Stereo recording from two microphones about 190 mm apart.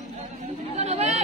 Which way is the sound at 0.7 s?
35° right (ahead or behind).